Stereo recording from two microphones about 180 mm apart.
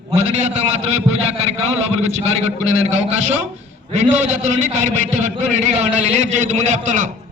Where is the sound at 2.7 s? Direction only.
40° right (ahead or behind).